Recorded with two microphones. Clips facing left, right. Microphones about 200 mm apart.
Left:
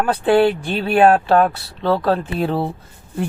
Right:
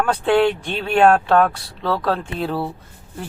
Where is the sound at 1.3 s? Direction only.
30° left (ahead or behind).